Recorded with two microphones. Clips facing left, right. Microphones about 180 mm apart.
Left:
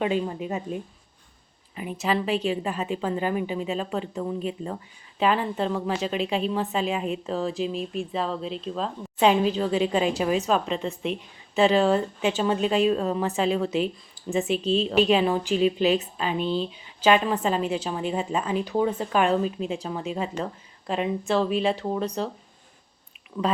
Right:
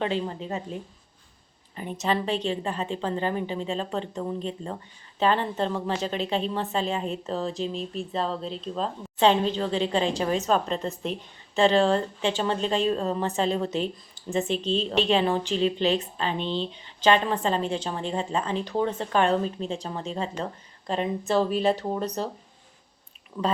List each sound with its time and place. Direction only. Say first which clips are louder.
0.0 s speech: left 2 dB; 15° left (ahead or behind)
2.0 s speech: left 1 dB; 5° left (ahead or behind)
2.3 s a woman's voice: left 2 dB; 35° right (ahead or behind)
3.0 s speech: left 1 dB; 10° left (ahead or behind)
4.1 s speech: left 2 dB; 5° right (ahead or behind)